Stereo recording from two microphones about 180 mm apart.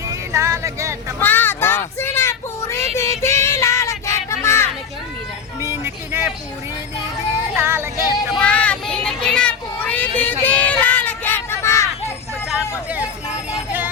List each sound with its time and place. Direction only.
0.1 s music: 15° right (ahead or behind)
1.2 s child singing: 10° left (ahead or behind)
5.8 s a sound: 10° right (ahead or behind)
7.5 s music: 15° right (ahead or behind)
8.3 s child singing: 5° left (ahead or behind)